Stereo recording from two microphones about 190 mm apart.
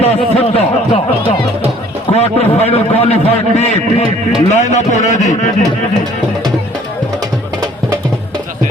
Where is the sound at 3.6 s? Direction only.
35° left (ahead or behind).